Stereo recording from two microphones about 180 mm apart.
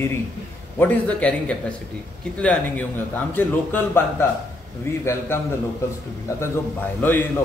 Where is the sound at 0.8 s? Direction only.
10° left (ahead or behind).